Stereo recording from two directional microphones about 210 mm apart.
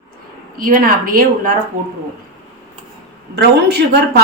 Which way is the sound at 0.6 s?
40° right (ahead or behind).